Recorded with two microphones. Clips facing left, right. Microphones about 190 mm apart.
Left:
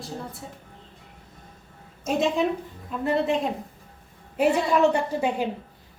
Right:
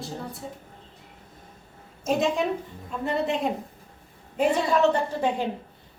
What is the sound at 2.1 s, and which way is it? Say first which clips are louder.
A woman's voice: left 1 dB; centre (ahead or behind).